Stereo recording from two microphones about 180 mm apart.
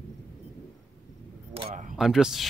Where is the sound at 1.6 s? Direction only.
35° right (ahead or behind).